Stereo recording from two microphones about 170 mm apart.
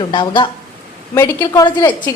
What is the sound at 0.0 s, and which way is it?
A woman's voice, 30° left (ahead or behind).